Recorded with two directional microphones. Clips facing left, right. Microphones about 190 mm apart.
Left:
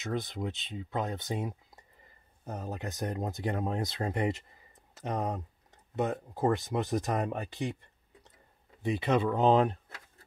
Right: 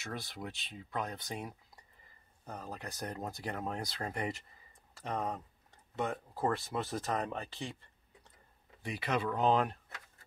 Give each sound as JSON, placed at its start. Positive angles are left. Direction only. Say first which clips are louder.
{"t": 0.0, "sound": "speech", "louder": "left 8 dB", "side_deg": 20}
{"t": 8.8, "sound": "speech", "louder": "left 7 dB", "side_deg": 25}